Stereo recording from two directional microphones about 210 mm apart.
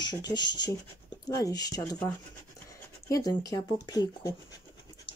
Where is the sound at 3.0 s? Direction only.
15° left (ahead or behind).